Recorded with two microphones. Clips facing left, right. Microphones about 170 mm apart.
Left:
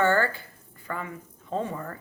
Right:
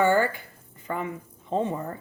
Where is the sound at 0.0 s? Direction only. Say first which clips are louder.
Right 2 dB; 15° right (ahead or behind).